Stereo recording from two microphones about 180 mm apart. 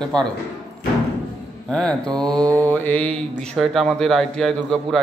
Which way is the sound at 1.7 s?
5° left (ahead or behind).